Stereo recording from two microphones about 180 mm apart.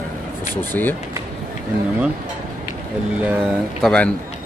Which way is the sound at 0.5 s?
10° left (ahead or behind).